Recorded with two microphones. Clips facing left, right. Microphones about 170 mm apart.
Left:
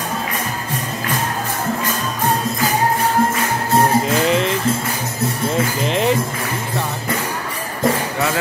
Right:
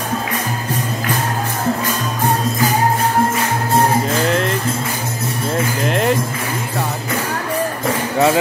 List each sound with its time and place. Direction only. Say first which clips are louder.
4.1 s music: left 1 dB; centre (ahead or behind)
5.9 s speech: right 1 dB; centre (ahead or behind)